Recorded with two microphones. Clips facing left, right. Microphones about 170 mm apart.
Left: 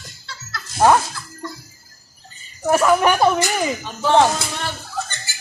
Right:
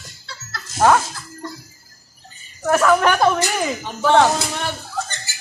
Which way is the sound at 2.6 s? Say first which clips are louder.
Even; 15° left (ahead or behind).